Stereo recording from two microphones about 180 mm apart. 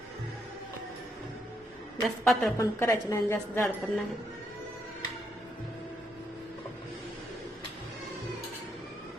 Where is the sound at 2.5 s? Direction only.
15° left (ahead or behind).